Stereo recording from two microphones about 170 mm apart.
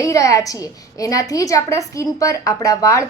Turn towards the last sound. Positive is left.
turn(degrees=20)  # may be behind; listen again after turning